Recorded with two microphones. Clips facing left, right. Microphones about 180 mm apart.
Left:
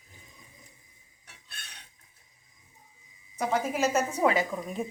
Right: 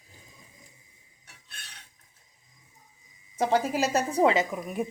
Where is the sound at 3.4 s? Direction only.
30° right (ahead or behind).